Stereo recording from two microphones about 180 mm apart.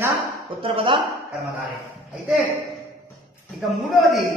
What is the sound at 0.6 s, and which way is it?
Speech, 30° right (ahead or behind).